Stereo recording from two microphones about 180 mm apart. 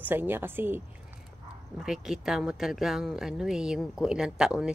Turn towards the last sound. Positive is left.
turn(degrees=-5)  # may be behind; listen again after turning